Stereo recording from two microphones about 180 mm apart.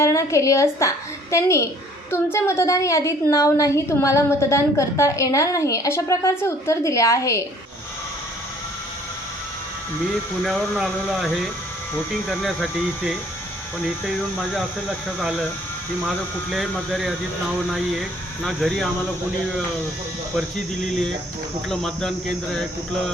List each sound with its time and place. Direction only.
0.0 s a woman's voice: 15° left (ahead or behind)
10.4 s speech: centre (ahead or behind)
13.8 s speech: centre (ahead or behind)
21.7 s speech: 5° left (ahead or behind)